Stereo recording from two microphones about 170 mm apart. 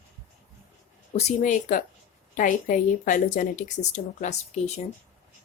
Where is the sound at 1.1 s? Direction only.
45° left (ahead or behind).